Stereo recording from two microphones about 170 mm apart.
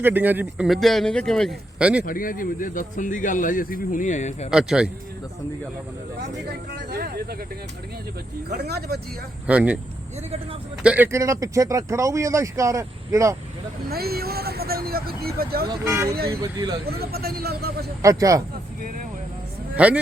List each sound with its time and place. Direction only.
0.0 s speech: 10° right (ahead or behind)
0.7 s a man's voice: centre (ahead or behind)
2.0 s speech: 55° left (ahead or behind)
4.5 s a man's voice: 5° right (ahead or behind)
6.5 s a man's voice: 80° right
8.4 s a man's voice: 70° right (ahead or behind)
9.5 s speech: 10° right (ahead or behind)
10.8 s speech: 10° right (ahead or behind)
13.9 s speech: 65° right (ahead or behind)
15.7 s speech: 20° right (ahead or behind)
16.8 s a man's voice: 65° right (ahead or behind)
18.0 s speech: 20° right (ahead or behind)
19.7 s a man's voice: 10° right (ahead or behind)